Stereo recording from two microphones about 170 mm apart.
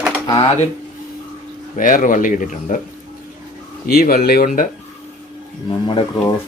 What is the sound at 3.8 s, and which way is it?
Speech, 60° left (ahead or behind).